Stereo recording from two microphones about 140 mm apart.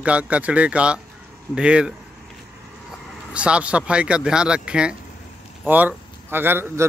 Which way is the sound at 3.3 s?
10° right (ahead or behind).